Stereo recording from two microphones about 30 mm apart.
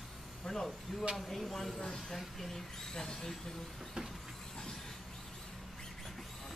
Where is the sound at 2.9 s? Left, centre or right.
Centre.